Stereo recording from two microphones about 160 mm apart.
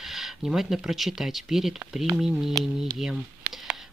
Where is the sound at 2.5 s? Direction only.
20° right (ahead or behind).